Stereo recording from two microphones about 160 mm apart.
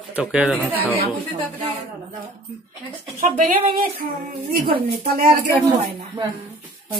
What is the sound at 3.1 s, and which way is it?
Speech, 60° right (ahead or behind).